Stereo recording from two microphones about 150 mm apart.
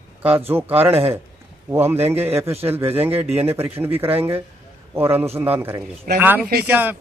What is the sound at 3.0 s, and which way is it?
Speech, 40° right (ahead or behind).